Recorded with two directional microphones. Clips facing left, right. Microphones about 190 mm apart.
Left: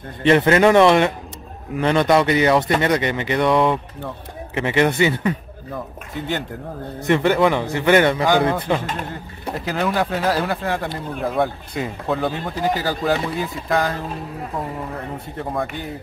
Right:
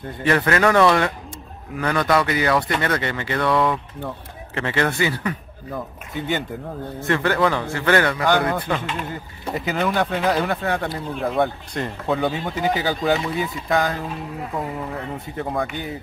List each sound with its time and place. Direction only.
0.2 s a man's voice: 25° left (ahead or behind)
6.1 s speech: centre (ahead or behind)
7.0 s a man's voice: 20° left (ahead or behind)
9.1 s speech: centre (ahead or behind)
15.3 s speech: centre (ahead or behind)